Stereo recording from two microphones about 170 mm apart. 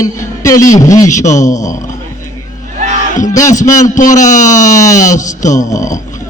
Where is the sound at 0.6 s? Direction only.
20° left (ahead or behind).